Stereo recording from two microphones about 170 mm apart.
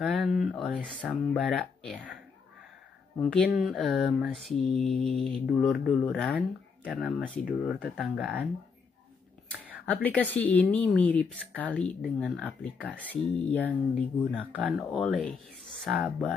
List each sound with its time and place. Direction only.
0.0 s mantra: centre (ahead or behind)
3.2 s mantra: 5° left (ahead or behind)
9.8 s speech: 10° left (ahead or behind)
14.5 s mantra: 5° right (ahead or behind)